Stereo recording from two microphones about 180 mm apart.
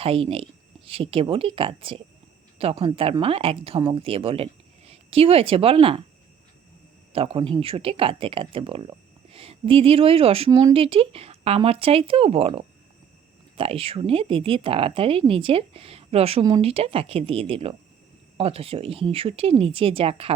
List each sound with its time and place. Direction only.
0.0 s a woman's voice: 30° right (ahead or behind)
7.1 s speech: 30° right (ahead or behind)
16.4 s speech: 20° right (ahead or behind)
16.6 s speech: 30° right (ahead or behind)